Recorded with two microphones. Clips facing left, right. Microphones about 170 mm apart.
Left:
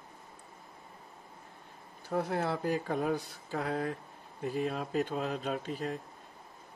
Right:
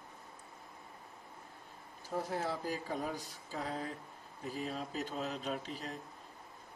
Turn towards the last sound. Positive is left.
turn(degrees=50)  # may be behind; listen again after turning